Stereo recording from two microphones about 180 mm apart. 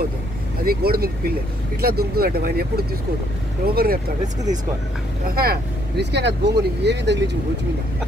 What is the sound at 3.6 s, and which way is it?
Speech, 55° right (ahead or behind).